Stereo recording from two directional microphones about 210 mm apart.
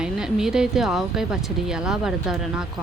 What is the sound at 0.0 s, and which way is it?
Speech, 5° right (ahead or behind).